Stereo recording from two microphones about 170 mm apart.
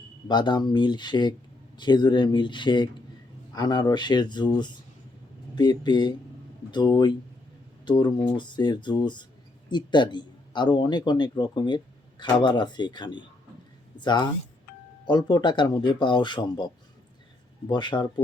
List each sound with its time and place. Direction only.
0.3 s speech: 25° left (ahead or behind)